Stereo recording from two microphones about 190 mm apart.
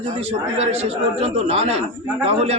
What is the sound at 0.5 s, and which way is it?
A man's voice, 35° right (ahead or behind).